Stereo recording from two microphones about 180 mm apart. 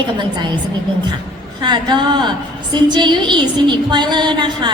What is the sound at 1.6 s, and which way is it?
A woman's voice, 25° right (ahead or behind).